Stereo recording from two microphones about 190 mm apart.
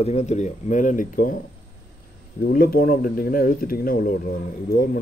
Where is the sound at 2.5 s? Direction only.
50° left (ahead or behind).